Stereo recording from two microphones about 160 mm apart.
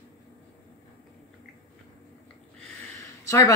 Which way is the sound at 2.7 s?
20° left (ahead or behind).